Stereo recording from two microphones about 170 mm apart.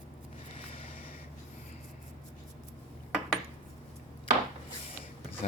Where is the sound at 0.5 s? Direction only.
35° left (ahead or behind).